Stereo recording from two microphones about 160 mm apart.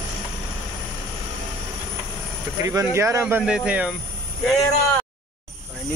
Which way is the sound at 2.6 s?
20° right (ahead or behind).